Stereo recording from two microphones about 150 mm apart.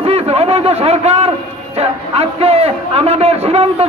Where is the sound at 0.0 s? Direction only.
40° right (ahead or behind).